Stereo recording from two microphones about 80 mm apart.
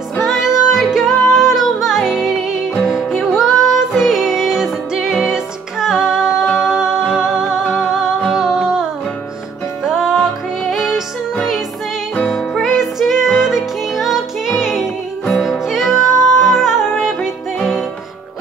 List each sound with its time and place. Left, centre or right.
0.2 s music: centre
9.8 s music: centre
12.2 s music: centre